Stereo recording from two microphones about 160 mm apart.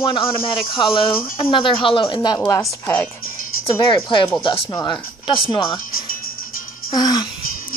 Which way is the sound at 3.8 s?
30° left (ahead or behind).